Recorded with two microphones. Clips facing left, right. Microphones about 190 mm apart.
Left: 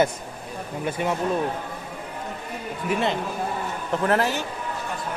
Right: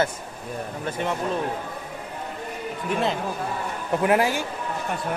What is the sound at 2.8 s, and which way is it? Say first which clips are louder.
Speech: left 1 dB; centre (ahead or behind).